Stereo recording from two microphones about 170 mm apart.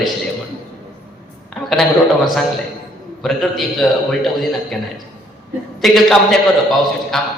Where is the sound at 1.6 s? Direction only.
Centre (ahead or behind).